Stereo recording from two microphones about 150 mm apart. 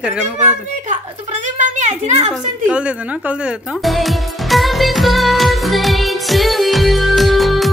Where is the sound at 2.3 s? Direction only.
5° right (ahead or behind).